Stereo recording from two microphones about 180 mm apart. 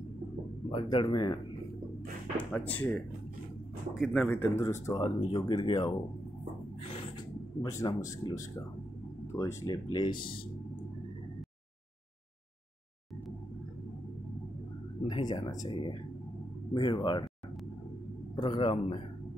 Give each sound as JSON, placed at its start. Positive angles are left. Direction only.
{"t": 0.7, "sound": "speech", "side_deg": 30}
{"t": 2.3, "sound": "speech", "side_deg": 10}
{"t": 7.6, "sound": "speech", "side_deg": 20}
{"t": 15.0, "sound": "speech", "side_deg": 25}
{"t": 18.3, "sound": "speech", "side_deg": 25}